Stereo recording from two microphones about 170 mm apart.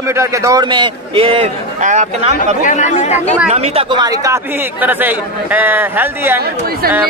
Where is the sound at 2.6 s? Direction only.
45° left (ahead or behind).